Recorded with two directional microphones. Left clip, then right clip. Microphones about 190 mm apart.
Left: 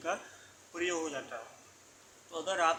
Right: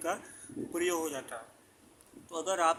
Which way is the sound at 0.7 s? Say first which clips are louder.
Right 2 dB; 35° right (ahead or behind).